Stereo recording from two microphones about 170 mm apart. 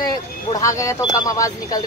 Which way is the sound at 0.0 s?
25° left (ahead or behind).